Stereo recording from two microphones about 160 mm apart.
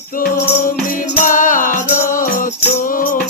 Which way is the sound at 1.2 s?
55° left (ahead or behind).